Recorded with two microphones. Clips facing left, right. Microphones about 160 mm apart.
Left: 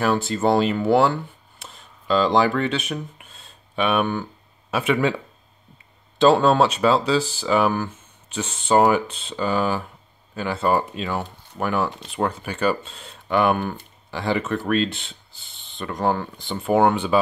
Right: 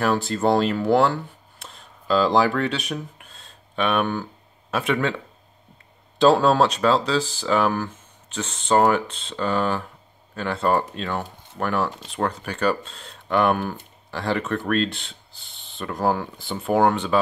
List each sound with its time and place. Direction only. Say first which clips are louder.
0.0 s speech: left 1 dB; centre (ahead or behind)
6.1 s speech: left 1 dB; centre (ahead or behind)